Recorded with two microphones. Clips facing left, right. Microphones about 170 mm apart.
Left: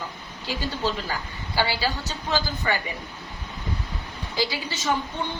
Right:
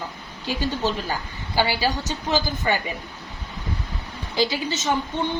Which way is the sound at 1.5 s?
15° right (ahead or behind).